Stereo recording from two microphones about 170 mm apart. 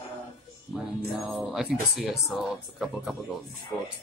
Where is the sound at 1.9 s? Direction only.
Centre (ahead or behind).